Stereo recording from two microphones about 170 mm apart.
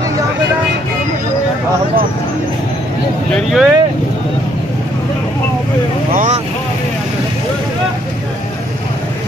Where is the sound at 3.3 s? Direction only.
Centre (ahead or behind).